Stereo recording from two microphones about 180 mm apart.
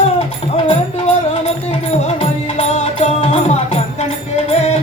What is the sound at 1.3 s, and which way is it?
Music, 35° left (ahead or behind).